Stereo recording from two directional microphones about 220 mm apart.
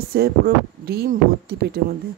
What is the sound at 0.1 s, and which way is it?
Speech, 45° right (ahead or behind).